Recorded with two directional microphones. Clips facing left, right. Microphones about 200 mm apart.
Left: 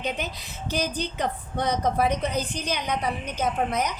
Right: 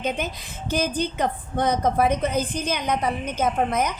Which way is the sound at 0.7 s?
50° right (ahead or behind).